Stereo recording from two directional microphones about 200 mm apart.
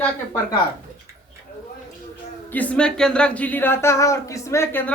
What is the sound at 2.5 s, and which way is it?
Speech, 5° left (ahead or behind).